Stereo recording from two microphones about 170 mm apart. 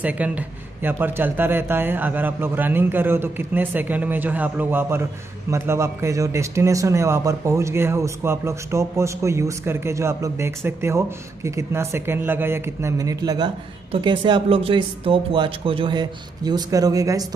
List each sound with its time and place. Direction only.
0.0 s a man's voice: 10° right (ahead or behind)